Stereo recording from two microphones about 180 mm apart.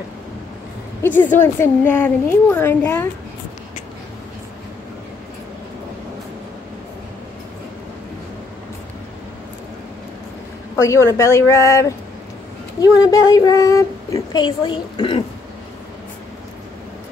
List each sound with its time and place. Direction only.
1.0 s a woman's voice: 10° left (ahead or behind)
10.8 s a woman's voice: 15° left (ahead or behind)